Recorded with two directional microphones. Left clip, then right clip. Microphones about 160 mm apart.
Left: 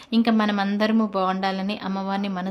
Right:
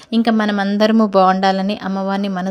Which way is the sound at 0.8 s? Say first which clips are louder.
Right 13 dB; 45° right (ahead or behind).